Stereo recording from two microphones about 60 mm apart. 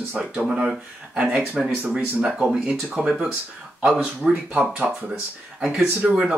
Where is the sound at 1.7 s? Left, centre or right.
Right.